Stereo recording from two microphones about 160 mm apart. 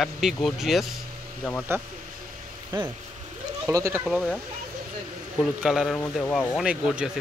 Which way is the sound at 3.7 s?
15° right (ahead or behind).